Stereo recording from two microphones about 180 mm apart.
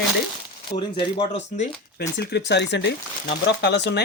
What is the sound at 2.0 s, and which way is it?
Speech, 70° left (ahead or behind).